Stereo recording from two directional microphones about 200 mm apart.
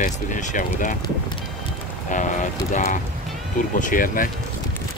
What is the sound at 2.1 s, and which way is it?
Speech, 40° left (ahead or behind).